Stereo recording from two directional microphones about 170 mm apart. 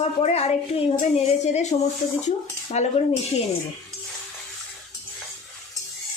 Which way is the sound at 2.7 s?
40° left (ahead or behind).